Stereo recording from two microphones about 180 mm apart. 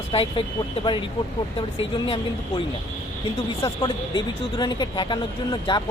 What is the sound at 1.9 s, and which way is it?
Speech, 30° left (ahead or behind).